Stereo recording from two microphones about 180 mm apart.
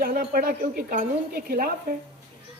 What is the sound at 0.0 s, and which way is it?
Speech, 55° right (ahead or behind).